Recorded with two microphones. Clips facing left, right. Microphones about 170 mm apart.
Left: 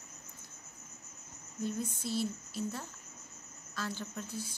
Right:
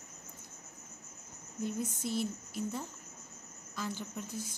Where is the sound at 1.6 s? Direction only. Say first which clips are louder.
Even; 15° right (ahead or behind).